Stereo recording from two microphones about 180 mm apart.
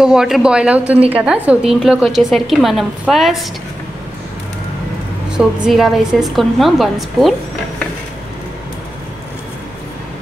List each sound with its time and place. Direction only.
0.0 s a woman's voice: 5° right (ahead or behind)
5.3 s a woman's voice: 5° right (ahead or behind)